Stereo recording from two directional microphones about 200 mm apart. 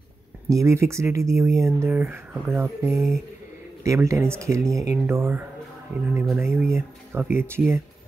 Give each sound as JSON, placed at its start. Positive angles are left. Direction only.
{"t": 0.5, "sound": "speech", "side_deg": -15}
{"t": 2.9, "sound": "speech", "side_deg": 0}
{"t": 3.8, "sound": "speech", "side_deg": -15}